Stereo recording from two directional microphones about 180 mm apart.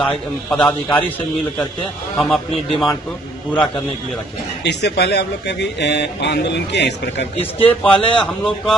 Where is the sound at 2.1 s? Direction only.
Centre (ahead or behind).